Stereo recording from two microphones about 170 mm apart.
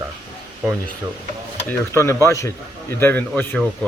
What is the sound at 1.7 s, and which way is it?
Speech, 15° left (ahead or behind).